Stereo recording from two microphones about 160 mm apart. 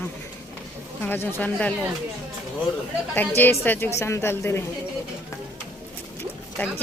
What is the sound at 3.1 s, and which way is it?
A woman's voice, 10° left (ahead or behind).